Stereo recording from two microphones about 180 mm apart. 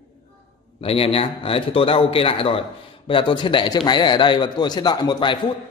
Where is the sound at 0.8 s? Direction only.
30° left (ahead or behind).